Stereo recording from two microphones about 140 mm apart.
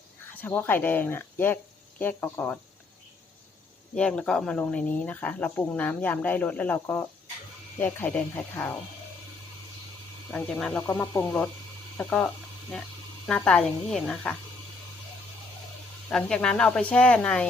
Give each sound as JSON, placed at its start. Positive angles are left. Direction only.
{"t": 0.3, "sound": "speech", "side_deg": 15}
{"t": 3.9, "sound": "speech", "side_deg": 5}
{"t": 10.3, "sound": "speech", "side_deg": 10}
{"t": 16.0, "sound": "speech", "side_deg": 5}